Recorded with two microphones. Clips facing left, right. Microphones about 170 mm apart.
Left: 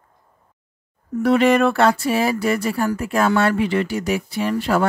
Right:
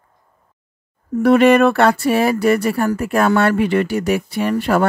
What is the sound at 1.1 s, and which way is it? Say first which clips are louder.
Speech: right 4 dB; 55° right (ahead or behind).